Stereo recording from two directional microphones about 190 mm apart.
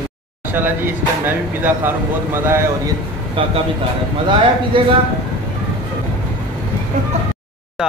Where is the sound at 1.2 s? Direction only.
10° right (ahead or behind).